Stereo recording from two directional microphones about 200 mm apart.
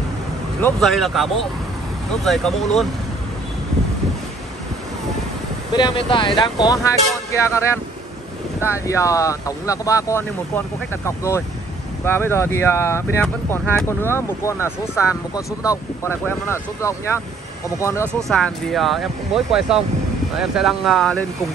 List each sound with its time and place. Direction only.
0.6 s speech: 5° left (ahead or behind)
5.8 s speech: 25° left (ahead or behind)
18.3 s speech: 5° left (ahead or behind)